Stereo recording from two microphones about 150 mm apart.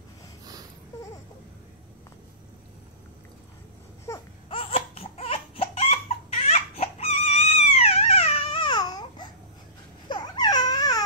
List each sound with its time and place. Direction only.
4.1 s baby cry: 20° left (ahead or behind)
4.5 s crying: 40° left (ahead or behind)
10.0 s baby cry: 30° left (ahead or behind)